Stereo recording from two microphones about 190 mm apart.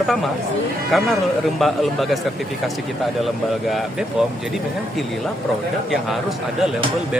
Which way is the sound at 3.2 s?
Centre (ahead or behind).